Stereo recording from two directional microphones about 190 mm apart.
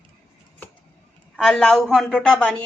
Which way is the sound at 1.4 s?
5° left (ahead or behind).